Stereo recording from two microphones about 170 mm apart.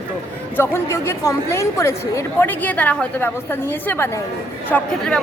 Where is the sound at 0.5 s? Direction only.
15° left (ahead or behind).